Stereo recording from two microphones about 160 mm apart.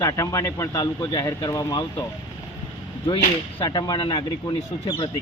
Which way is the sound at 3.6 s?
25° left (ahead or behind).